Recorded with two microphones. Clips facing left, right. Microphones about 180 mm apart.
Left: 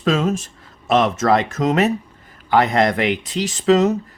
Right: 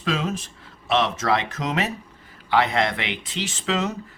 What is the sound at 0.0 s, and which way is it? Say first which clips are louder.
Speech: left 7 dB; 50° left (ahead or behind).